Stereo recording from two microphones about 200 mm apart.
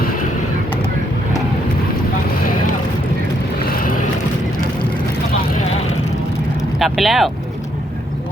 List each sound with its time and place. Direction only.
3.7 s vehicle: 45° left (ahead or behind)
6.7 s vehicle: centre (ahead or behind)